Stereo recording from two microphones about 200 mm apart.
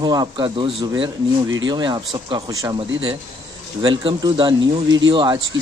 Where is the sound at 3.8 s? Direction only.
25° right (ahead or behind).